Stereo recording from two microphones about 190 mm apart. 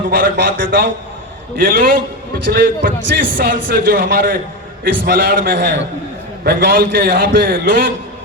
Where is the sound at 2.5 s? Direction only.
45° right (ahead or behind).